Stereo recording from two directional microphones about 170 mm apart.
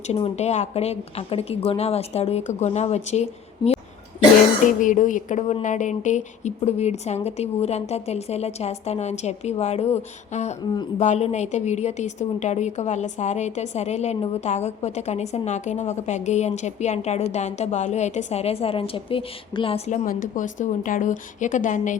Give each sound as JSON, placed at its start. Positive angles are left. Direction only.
{"t": 0.1, "sound": "a woman's voice", "side_deg": 40}
{"t": 19.9, "sound": "speech", "side_deg": 50}